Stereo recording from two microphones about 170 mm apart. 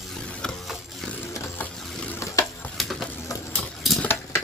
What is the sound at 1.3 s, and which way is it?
Ratchet, 15° left (ahead or behind).